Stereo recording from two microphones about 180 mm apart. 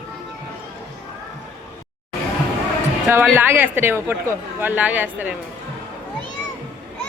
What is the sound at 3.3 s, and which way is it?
A woman's voice, 10° right (ahead or behind).